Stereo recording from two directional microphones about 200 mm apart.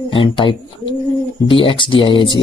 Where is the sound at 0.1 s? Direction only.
25° left (ahead or behind).